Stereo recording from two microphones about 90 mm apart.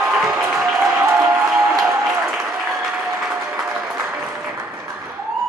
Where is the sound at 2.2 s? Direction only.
5° right (ahead or behind).